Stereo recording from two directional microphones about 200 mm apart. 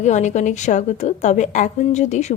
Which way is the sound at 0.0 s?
35° left (ahead or behind).